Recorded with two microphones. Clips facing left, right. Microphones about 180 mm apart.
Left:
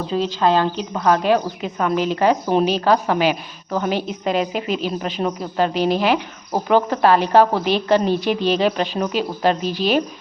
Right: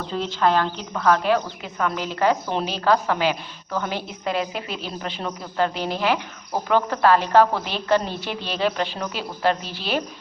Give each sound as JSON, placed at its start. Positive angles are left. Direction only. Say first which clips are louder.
{"t": 0.1, "sound": "a woman's voice", "louder": "left 3 dB", "side_deg": 15}